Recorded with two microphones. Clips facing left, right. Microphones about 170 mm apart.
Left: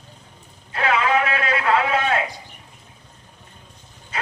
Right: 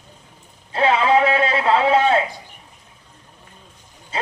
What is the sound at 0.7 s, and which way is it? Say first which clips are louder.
A man's voice: right 4 dB; 30° right (ahead or behind).